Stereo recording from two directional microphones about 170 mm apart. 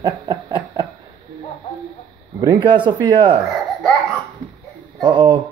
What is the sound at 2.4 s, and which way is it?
Speech, 25° right (ahead or behind).